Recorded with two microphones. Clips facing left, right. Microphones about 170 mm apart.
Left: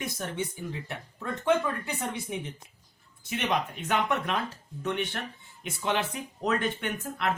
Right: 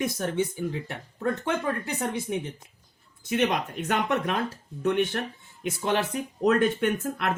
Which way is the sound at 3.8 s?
45° right (ahead or behind).